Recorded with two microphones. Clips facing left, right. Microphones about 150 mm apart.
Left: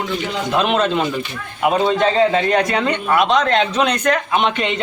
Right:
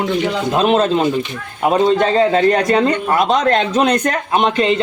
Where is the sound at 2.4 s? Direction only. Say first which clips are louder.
Right 4 dB; 40° right (ahead or behind).